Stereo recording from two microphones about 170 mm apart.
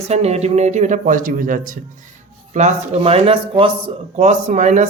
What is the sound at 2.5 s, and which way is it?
Speech, 45° right (ahead or behind).